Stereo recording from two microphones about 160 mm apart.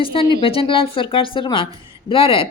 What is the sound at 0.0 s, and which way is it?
Speech, 35° left (ahead or behind).